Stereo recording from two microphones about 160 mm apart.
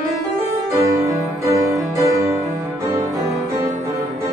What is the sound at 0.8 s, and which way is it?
Music, 20° right (ahead or behind).